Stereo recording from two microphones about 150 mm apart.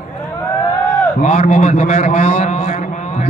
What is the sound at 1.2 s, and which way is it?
A man's voice, 50° left (ahead or behind).